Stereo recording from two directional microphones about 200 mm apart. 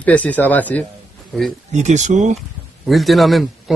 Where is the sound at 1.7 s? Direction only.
35° right (ahead or behind).